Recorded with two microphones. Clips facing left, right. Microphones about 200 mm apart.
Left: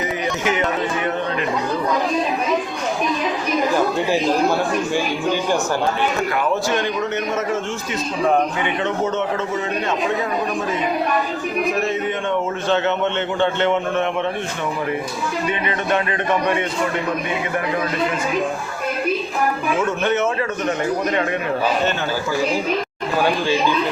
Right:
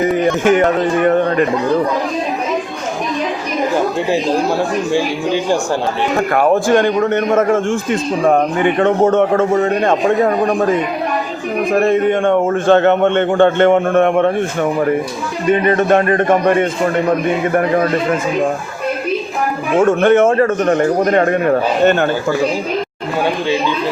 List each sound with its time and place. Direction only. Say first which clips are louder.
0.2 s a man's voice: right 8 dB; 50° right (ahead or behind)
4.9 s speech: right 4 dB; 30° right (ahead or behind)
6.1 s a man's voice: right 7 dB; 50° right (ahead or behind)
11.7 s a man's voice: right 9 dB; 55° right (ahead or behind)
19.8 s a man's voice: right 11 dB; 50° right (ahead or behind)